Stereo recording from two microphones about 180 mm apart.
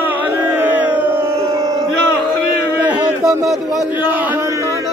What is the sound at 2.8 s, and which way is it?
A man's voice, centre (ahead or behind).